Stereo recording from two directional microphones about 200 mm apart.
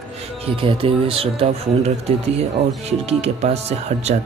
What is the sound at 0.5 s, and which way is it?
Speech, 25° right (ahead or behind).